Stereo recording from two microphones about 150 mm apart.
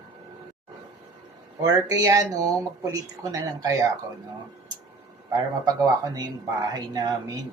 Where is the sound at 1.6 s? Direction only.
20° right (ahead or behind).